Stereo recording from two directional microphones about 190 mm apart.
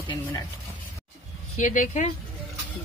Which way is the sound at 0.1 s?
20° left (ahead or behind).